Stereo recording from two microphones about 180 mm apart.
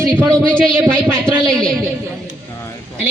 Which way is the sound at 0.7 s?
10° right (ahead or behind).